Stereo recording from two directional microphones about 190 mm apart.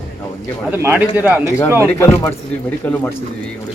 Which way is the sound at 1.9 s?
10° left (ahead or behind).